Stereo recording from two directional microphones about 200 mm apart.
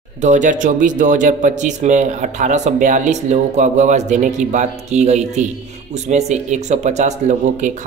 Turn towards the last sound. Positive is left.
turn(degrees=-35)  # may be behind; listen again after turning